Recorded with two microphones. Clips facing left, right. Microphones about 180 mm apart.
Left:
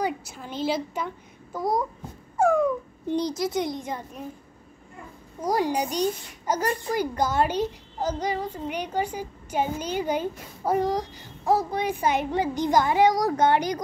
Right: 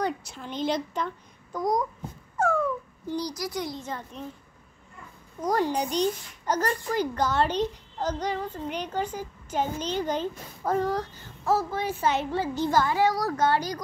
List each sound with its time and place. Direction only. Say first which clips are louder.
0.0 s a child's voice: left 1 dB; 5° left (ahead or behind)
5.4 s a child's voice: left 1 dB; 10° left (ahead or behind)